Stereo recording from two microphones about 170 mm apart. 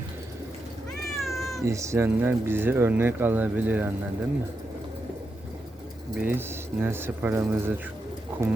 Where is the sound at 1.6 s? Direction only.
15° right (ahead or behind).